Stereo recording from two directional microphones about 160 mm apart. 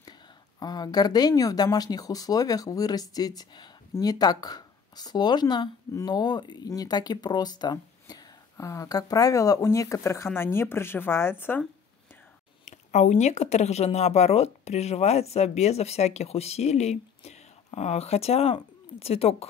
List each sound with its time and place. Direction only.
0.6 s speech: 25° left (ahead or behind)
12.6 s speech: 45° left (ahead or behind)